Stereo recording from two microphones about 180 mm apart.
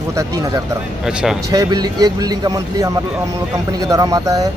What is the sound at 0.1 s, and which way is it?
Speech, 20° right (ahead or behind).